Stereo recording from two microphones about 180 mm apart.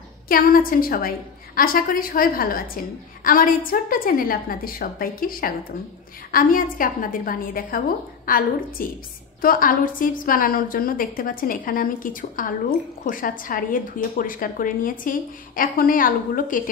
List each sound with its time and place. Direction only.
0.3 s a woman's voice: 55° left (ahead or behind)